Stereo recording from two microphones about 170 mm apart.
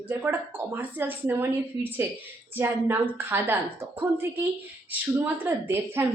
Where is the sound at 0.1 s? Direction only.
10° right (ahead or behind).